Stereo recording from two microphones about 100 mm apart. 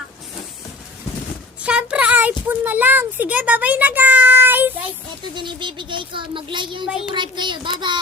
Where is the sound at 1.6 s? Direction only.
10° right (ahead or behind).